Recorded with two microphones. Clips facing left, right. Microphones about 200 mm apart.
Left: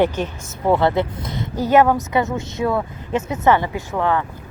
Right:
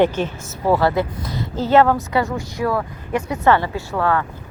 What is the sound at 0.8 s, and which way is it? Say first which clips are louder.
A woman's voice: even; 20° left (ahead or behind).